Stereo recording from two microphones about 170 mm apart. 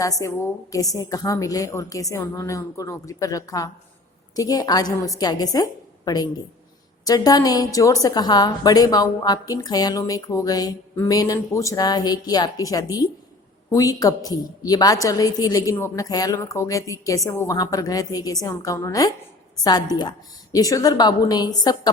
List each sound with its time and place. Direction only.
0.0 s a woman's voice: 20° left (ahead or behind)